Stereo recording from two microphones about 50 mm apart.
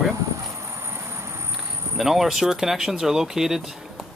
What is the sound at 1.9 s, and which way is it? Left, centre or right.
Speech, centre.